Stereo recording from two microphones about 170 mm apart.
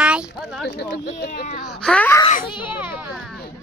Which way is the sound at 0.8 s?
70° left (ahead or behind).